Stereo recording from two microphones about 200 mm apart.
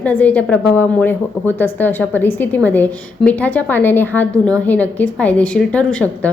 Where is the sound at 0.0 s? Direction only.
10° left (ahead or behind).